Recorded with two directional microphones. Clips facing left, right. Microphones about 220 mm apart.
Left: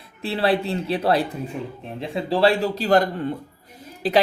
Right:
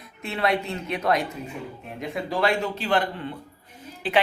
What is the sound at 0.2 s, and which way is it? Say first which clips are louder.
Speech: left 4 dB; 30° left (ahead or behind).